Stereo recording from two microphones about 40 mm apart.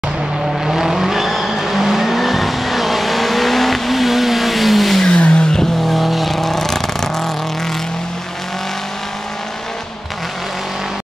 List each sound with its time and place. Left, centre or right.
0.7 s vehicle: centre
5.0 s vehicle: left
5.9 s vehicle: centre